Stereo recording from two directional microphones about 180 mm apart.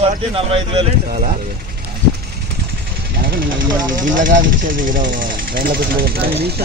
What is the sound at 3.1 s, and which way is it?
Vehicle, 55° right (ahead or behind).